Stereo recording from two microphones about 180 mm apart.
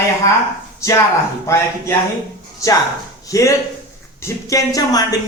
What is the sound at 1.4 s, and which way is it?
Speech, 15° left (ahead or behind).